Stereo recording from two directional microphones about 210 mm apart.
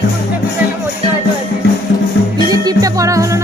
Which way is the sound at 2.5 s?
20° right (ahead or behind).